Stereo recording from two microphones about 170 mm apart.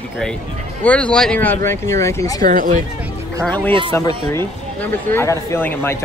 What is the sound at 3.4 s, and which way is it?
Speech, 10° left (ahead or behind).